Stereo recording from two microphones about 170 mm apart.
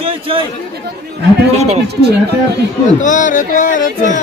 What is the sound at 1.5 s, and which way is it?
Speech, 40° right (ahead or behind).